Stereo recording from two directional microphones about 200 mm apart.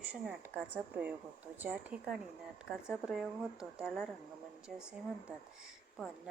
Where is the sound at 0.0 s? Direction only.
5° right (ahead or behind).